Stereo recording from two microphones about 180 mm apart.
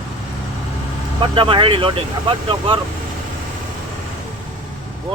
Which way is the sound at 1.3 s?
30° right (ahead or behind).